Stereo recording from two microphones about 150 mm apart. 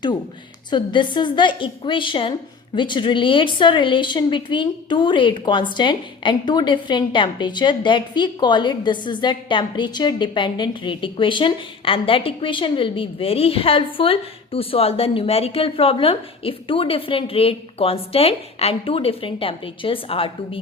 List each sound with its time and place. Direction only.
0.7 s a woman's voice: 30° left (ahead or behind)